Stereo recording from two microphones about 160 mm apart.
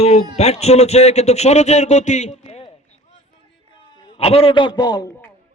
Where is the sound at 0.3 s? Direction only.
40° left (ahead or behind).